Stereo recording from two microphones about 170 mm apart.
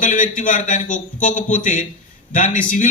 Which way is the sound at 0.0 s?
50° left (ahead or behind).